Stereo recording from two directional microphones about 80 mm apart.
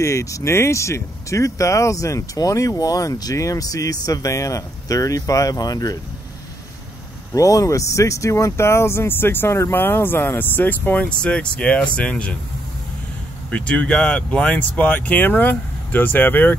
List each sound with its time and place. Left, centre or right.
0.0 s speech: left
7.3 s speech: left; by 12.4 s centre
13.5 s speech: centre